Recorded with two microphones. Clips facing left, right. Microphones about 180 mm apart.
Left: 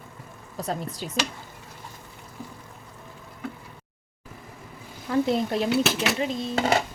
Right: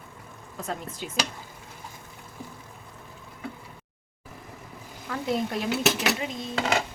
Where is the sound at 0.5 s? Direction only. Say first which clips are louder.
Left 4 dB; 35° left (ahead or behind).